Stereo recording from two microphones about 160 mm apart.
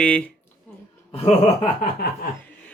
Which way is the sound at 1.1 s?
40° left (ahead or behind).